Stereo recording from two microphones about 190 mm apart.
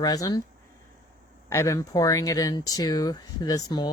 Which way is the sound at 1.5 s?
15° left (ahead or behind).